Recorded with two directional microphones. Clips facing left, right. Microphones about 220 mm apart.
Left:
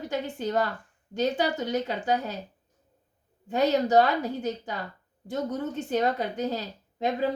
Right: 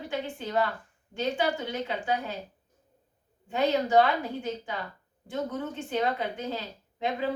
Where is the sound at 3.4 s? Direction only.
40° left (ahead or behind).